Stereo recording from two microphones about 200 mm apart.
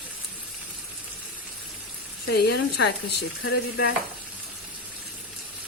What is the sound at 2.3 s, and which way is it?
Speech, 55° left (ahead or behind).